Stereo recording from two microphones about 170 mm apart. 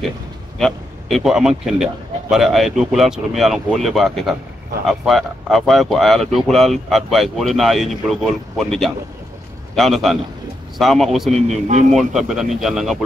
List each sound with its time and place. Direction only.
0.6 s a man's voice: centre (ahead or behind)